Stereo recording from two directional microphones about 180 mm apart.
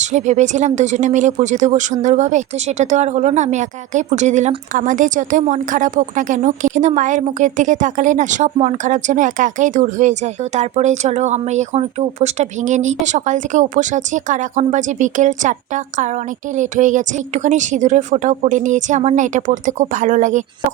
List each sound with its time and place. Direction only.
0.0 s speech: 40° right (ahead or behind)